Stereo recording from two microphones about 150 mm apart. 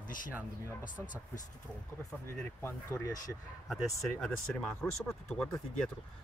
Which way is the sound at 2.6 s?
15° left (ahead or behind).